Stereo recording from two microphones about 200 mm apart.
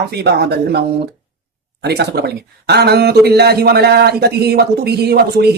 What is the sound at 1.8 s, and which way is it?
Mantra, 55° right (ahead or behind).